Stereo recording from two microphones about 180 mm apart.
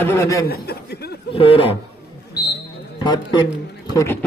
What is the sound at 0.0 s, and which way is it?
Speech, 15° left (ahead or behind).